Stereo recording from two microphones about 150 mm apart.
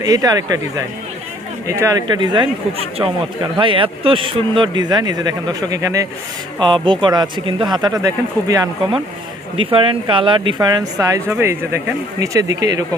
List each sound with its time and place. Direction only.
0.0 s speech: 25° right (ahead or behind)
9.6 s speech: 35° right (ahead or behind)